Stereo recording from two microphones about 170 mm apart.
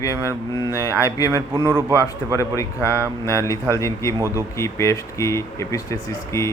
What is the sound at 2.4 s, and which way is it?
Speech, 15° left (ahead or behind).